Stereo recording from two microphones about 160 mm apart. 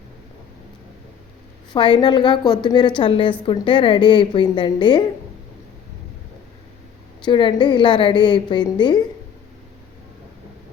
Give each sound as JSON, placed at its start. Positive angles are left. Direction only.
{"t": 1.7, "sound": "a woman's voice", "side_deg": 30}
{"t": 7.3, "sound": "a woman's voice", "side_deg": 30}